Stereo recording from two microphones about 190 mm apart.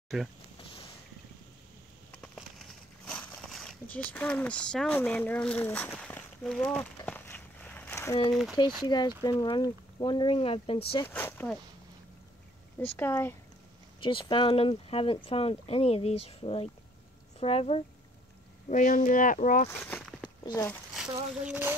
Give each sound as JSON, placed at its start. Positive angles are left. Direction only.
{"t": 0.6, "sound": "a sound", "side_deg": 30}
{"t": 2.2, "sound": "a sound", "side_deg": 5}
{"t": 8.3, "sound": "speech", "side_deg": 0}
{"t": 8.8, "sound": "speech", "side_deg": 20}
{"t": 11.1, "sound": "speech", "side_deg": 10}
{"t": 12.9, "sound": "speech", "side_deg": 10}
{"t": 14.0, "sound": "speech", "side_deg": 25}
{"t": 18.7, "sound": "speech", "side_deg": 45}
{"t": 19.9, "sound": "a sound", "side_deg": 5}
{"t": 20.4, "sound": "speech", "side_deg": 20}
{"t": 20.9, "sound": "speech", "side_deg": -5}